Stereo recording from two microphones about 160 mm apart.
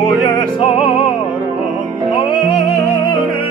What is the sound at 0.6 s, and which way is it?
Music, 30° left (ahead or behind).